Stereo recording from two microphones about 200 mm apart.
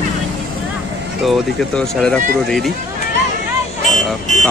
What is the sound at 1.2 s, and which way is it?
Speech, centre (ahead or behind).